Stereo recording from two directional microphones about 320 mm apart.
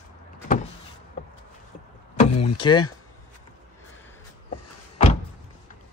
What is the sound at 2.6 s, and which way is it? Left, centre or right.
Speech, centre.